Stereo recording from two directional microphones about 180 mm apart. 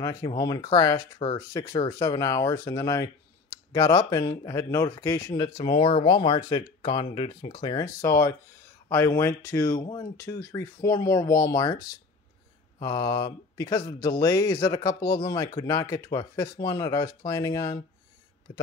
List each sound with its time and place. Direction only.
0.0 s speech: 20° left (ahead or behind)